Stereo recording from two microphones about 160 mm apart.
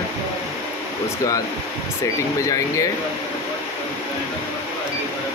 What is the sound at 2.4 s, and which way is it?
Speech, 20° left (ahead or behind).